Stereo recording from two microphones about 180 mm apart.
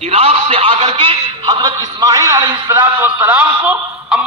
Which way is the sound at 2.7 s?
10° right (ahead or behind).